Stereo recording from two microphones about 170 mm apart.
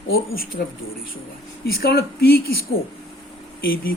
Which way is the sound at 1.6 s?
65° left (ahead or behind).